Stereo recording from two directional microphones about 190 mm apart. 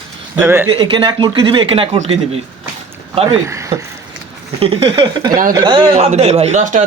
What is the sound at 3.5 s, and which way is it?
Speech, 15° right (ahead or behind).